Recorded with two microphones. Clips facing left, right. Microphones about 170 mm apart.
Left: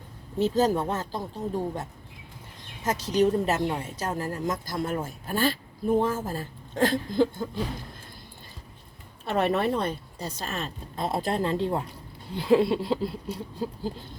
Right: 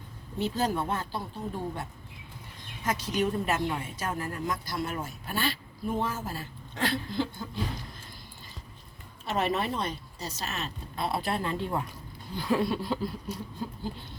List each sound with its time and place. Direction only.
0.3 s speech: 40° left (ahead or behind)
4.6 s a woman's voice: 45° left (ahead or behind)
9.2 s a woman's voice: 55° left (ahead or behind); by 11.9 s 25° left (ahead or behind)
12.3 s a sound: 25° left (ahead or behind)